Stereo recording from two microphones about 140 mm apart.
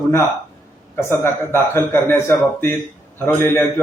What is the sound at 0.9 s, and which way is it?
A man's voice, 20° left (ahead or behind).